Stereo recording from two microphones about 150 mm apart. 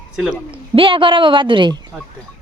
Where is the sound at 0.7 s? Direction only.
35° right (ahead or behind).